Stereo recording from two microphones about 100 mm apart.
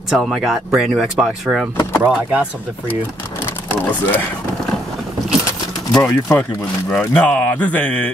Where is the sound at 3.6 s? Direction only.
20° left (ahead or behind).